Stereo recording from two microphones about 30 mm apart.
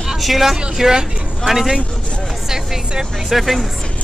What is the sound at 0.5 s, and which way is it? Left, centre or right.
Speech, centre.